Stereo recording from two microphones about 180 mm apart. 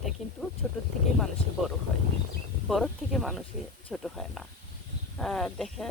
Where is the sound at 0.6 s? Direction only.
5° left (ahead or behind).